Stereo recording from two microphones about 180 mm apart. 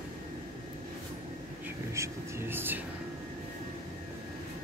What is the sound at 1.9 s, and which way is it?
Speech, 15° right (ahead or behind).